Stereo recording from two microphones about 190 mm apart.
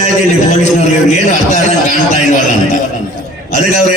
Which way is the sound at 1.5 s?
35° left (ahead or behind).